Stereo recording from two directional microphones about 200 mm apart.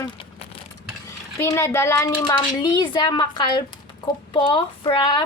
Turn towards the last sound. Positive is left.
turn(degrees=20)  # may be behind; listen again after turning